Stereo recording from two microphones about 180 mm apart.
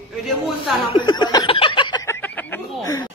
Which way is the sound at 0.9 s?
25° left (ahead or behind).